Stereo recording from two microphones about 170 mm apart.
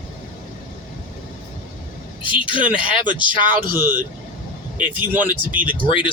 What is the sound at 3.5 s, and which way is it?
Speech, 55° right (ahead or behind).